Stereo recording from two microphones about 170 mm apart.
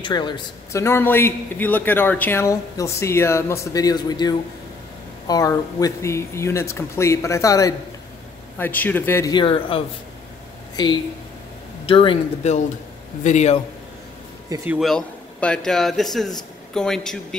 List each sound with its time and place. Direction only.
0.0 s speech: 25° left (ahead or behind)
0.8 s a man's voice: 15° left (ahead or behind)
9.3 s speech: 30° left (ahead or behind)
13.2 s a man's voice: 45° left (ahead or behind)
14.7 s a man's voice: centre (ahead or behind)